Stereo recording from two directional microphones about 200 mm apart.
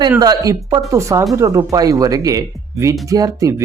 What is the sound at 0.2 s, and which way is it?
Speech, 20° right (ahead or behind).